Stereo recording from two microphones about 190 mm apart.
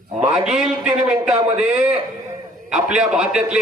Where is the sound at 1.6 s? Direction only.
5° right (ahead or behind).